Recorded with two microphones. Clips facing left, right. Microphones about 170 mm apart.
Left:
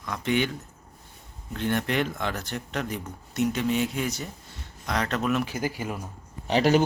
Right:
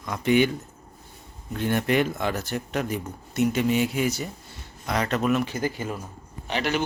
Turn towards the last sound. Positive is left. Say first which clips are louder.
# left 6 dB
turn(degrees=35)  # may be behind; listen again after turning